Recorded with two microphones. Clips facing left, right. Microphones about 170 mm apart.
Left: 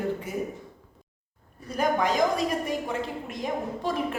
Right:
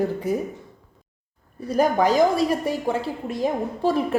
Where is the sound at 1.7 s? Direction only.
35° right (ahead or behind).